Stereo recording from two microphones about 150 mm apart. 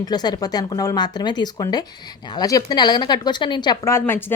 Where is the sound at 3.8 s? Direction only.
15° left (ahead or behind).